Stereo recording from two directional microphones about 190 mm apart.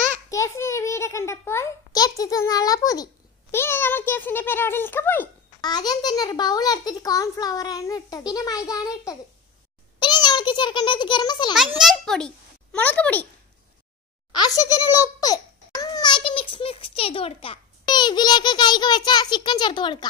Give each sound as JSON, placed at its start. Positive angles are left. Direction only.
{"t": 0.3, "sound": "a sound", "side_deg": 15}
{"t": 3.5, "sound": "a child's voice", "side_deg": 10}
{"t": 5.6, "sound": "a child's voice", "side_deg": 20}
{"t": 11.8, "sound": "a child's voice", "side_deg": 0}
{"t": 14.3, "sound": "a child's voice", "side_deg": 20}